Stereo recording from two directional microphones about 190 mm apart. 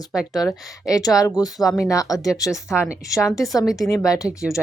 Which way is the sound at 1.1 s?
20° left (ahead or behind).